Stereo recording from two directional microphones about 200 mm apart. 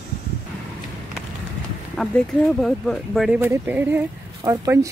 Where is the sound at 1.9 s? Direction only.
Centre (ahead or behind); by 4.9 s 15° right (ahead or behind).